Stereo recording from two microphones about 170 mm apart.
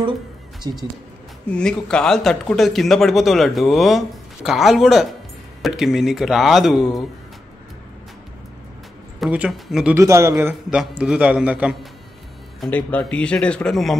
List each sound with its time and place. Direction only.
0.7 s speech: 20° right (ahead or behind)
1.5 s speech: 5° left (ahead or behind)
9.2 s speech: 5° right (ahead or behind)
9.9 s a man's voice: 15° right (ahead or behind)
10.3 s a man's voice: 5° right (ahead or behind)
12.5 s speech: 5° left (ahead or behind)